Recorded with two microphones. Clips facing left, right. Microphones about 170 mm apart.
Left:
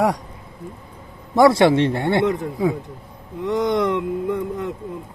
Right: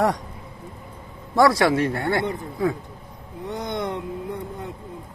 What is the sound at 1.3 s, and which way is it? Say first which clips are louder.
Speech: left 4 dB; 25° left (ahead or behind).